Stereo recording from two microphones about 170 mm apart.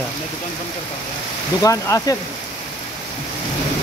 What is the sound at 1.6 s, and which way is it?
Speech, 20° left (ahead or behind).